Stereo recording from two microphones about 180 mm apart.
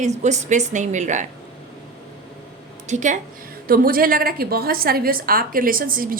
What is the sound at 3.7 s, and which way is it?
A woman's voice, 55° right (ahead or behind).